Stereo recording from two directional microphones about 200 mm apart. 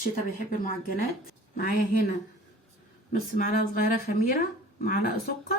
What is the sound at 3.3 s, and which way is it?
Speech, 45° left (ahead or behind).